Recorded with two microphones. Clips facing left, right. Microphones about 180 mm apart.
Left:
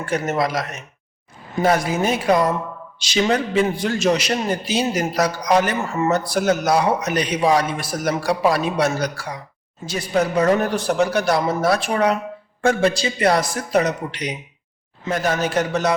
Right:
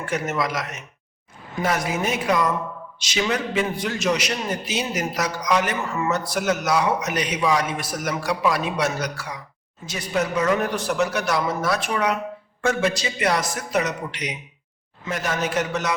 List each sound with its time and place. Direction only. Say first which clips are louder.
0.0 s speech: left 4 dB; 30° left (ahead or behind)